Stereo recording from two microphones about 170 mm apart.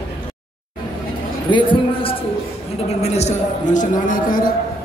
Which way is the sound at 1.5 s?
30° left (ahead or behind).